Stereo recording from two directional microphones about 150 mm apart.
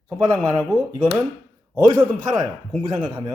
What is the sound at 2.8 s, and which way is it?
Speech, 35° right (ahead or behind).